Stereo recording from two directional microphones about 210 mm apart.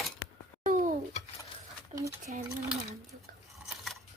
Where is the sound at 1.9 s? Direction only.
35° right (ahead or behind).